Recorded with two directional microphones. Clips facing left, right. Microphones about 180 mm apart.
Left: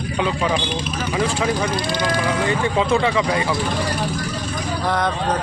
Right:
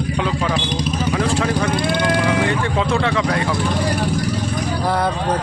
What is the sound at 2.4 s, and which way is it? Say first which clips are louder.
A man's voice: left 1 dB; 5° left (ahead or behind).